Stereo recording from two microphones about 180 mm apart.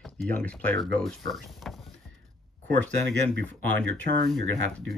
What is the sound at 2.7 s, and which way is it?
Speech, 75° right (ahead or behind).